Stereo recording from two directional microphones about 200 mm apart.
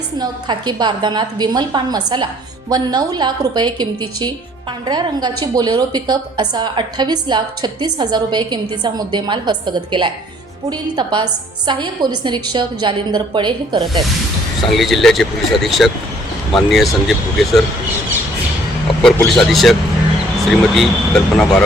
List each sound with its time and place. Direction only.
0.2 s a woman's voice: 20° right (ahead or behind)
14.7 s speech: centre (ahead or behind)
19.0 s speech: centre (ahead or behind)